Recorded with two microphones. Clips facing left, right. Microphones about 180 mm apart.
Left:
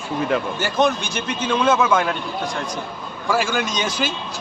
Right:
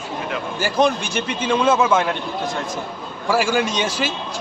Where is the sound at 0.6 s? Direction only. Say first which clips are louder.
Right 5 dB; 5° right (ahead or behind).